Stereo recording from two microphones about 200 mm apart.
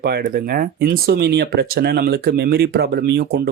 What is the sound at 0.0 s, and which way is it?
Speech, 50° right (ahead or behind).